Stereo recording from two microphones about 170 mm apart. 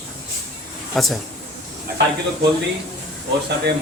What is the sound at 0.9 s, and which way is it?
Speech, centre (ahead or behind).